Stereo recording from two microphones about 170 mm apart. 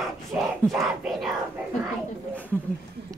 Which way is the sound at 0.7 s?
Centre (ahead or behind).